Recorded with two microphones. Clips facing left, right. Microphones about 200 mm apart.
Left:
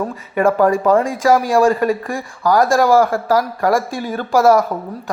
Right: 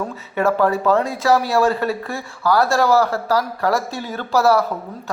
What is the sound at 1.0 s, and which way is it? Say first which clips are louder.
Speech: left 3 dB; 15° left (ahead or behind).